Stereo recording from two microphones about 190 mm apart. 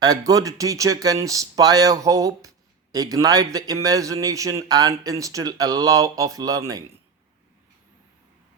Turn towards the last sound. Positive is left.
turn(degrees=-20)  # may be behind; listen again after turning